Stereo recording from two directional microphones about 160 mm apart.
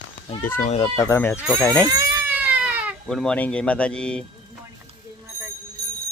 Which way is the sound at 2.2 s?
10° right (ahead or behind).